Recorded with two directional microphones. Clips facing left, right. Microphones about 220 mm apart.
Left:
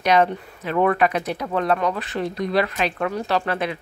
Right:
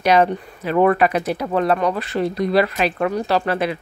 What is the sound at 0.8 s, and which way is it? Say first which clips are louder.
Speech: right 2 dB; 5° right (ahead or behind).